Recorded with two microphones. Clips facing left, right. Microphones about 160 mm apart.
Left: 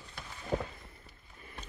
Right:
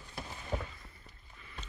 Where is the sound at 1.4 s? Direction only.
45° left (ahead or behind).